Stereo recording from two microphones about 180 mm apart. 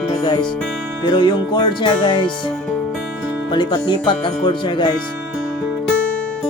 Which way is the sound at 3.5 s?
25° left (ahead or behind).